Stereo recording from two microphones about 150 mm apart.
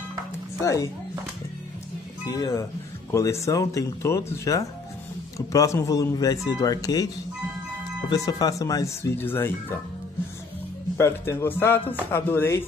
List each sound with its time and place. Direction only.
2.2 s speech: 20° left (ahead or behind)
8.1 s speech: 25° left (ahead or behind)
11.0 s a man's voice: 20° left (ahead or behind)